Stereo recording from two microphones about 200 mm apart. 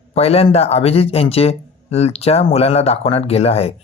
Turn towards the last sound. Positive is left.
turn(degrees=30)  # may be behind; listen again after turning